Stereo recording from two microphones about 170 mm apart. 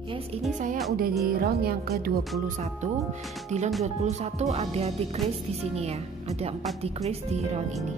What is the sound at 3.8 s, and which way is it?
Speech, 40° right (ahead or behind).